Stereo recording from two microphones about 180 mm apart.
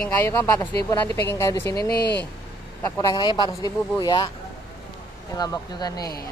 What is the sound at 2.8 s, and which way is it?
Speech, 20° left (ahead or behind).